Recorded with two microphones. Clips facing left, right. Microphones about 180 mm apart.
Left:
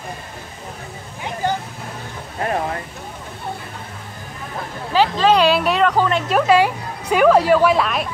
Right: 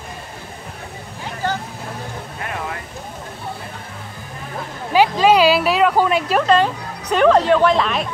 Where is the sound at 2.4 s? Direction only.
40° left (ahead or behind).